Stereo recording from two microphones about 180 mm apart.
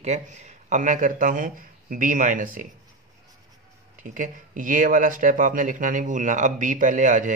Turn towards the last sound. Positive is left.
turn(degrees=-45)  # may be behind; listen again after turning